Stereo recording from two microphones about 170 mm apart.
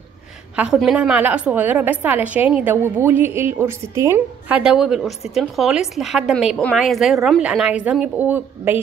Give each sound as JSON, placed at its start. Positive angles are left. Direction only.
{"t": 0.6, "sound": "a woman's voice", "side_deg": -5}